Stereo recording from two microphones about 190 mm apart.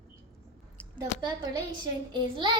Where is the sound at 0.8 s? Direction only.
5° left (ahead or behind).